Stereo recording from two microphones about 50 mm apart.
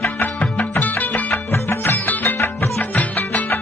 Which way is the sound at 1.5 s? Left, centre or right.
Left.